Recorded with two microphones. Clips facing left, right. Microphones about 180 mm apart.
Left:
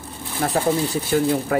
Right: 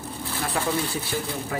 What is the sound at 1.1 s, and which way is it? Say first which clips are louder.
Speech: left 12 dB; 55° left (ahead or behind).